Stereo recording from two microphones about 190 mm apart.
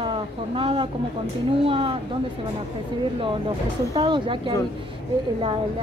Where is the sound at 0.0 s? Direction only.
30° right (ahead or behind).